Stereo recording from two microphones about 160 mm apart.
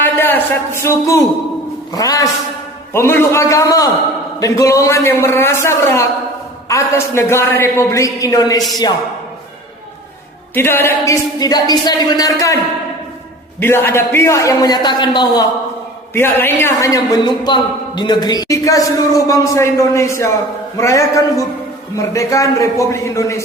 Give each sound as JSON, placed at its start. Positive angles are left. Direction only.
{"t": 0.0, "sound": "a man's voice", "side_deg": 10}
{"t": 10.5, "sound": "a man's voice", "side_deg": 15}
{"t": 13.6, "sound": "a man's voice", "side_deg": 15}
{"t": 16.1, "sound": "a man's voice", "side_deg": 15}